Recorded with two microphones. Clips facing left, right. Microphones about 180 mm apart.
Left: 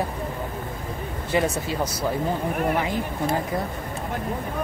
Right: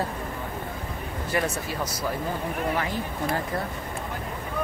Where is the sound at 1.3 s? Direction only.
20° left (ahead or behind).